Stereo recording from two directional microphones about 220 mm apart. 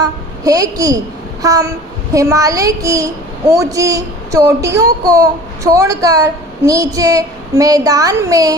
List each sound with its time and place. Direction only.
0.0 s a woman's voice: 15° right (ahead or behind)